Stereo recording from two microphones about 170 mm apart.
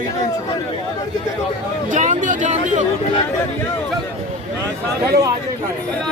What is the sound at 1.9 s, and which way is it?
Speech, 50° right (ahead or behind).